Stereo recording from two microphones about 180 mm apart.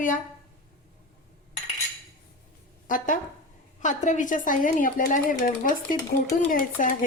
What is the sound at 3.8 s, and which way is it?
Speech, 45° left (ahead or behind).